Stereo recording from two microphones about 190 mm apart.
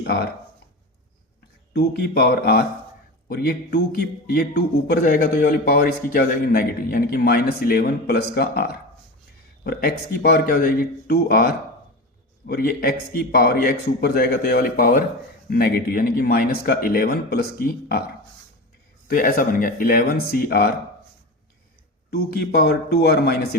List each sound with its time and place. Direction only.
1.7 s a man's voice: 60° left (ahead or behind)
19.0 s a man's voice: 45° left (ahead or behind)
22.1 s speech: 55° left (ahead or behind)